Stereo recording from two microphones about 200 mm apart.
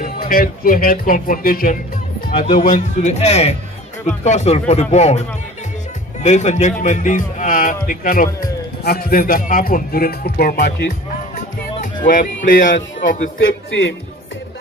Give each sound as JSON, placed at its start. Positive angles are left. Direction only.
{"t": 0.0, "sound": "a man's voice", "side_deg": 45}
{"t": 6.2, "sound": "a man's voice", "side_deg": 35}
{"t": 11.7, "sound": "speech", "side_deg": 40}
{"t": 13.7, "sound": "a man's voice", "side_deg": 70}